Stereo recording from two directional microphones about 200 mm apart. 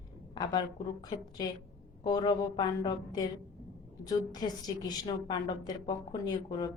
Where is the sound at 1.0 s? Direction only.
20° left (ahead or behind).